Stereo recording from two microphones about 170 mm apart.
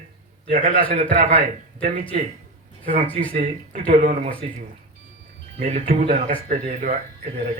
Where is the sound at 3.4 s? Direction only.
55° right (ahead or behind).